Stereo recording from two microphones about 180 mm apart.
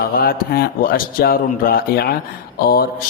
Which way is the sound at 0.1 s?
55° left (ahead or behind).